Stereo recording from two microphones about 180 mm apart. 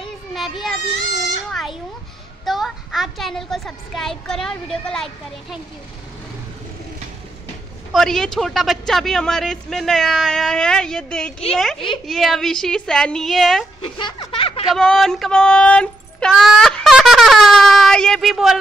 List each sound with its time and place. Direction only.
0.3 s speech: centre (ahead or behind)
1.5 s a sound: centre (ahead or behind)
2.4 s speech: centre (ahead or behind)
7.9 s speech: centre (ahead or behind)
13.7 s speech: 25° left (ahead or behind)
14.7 s speech: centre (ahead or behind)